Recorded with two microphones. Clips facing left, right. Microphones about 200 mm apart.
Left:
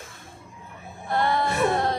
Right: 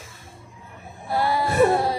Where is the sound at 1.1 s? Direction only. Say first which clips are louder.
Right 1 dB; 5° right (ahead or behind).